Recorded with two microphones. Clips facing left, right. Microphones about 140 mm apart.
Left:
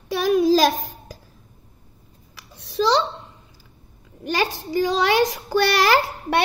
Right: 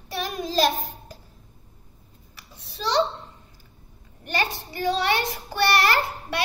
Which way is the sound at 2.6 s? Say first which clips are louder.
Left 8 dB; 90° left.